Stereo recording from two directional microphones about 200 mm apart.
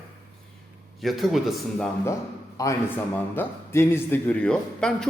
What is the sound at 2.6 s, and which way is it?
A man's voice, 15° left (ahead or behind).